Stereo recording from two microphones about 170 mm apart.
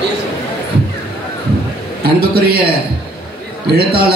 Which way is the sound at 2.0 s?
65° right (ahead or behind).